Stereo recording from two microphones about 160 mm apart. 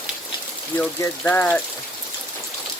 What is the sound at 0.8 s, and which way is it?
Speech, 10° left (ahead or behind).